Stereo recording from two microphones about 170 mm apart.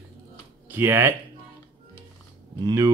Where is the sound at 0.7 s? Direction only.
10° right (ahead or behind).